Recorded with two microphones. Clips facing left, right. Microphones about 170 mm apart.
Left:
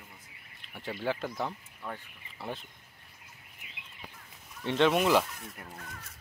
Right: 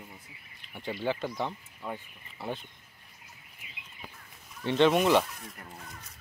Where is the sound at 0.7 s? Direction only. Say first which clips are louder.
Right 2 dB; centre (ahead or behind).